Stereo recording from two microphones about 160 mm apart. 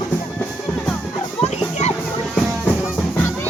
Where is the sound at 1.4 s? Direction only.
45° left (ahead or behind).